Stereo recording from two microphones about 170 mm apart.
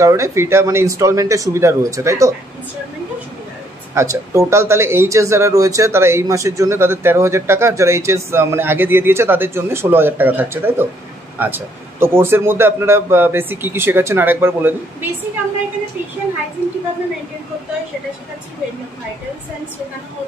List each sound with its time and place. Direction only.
0.0 s speech: 15° right (ahead or behind)
3.9 s speech: 15° right (ahead or behind)